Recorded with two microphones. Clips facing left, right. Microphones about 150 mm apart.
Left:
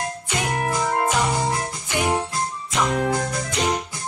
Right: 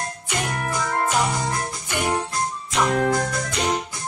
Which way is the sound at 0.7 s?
25° left (ahead or behind).